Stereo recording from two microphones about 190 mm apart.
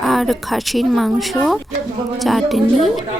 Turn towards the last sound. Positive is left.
turn(degrees=0)  # may be behind; listen again after turning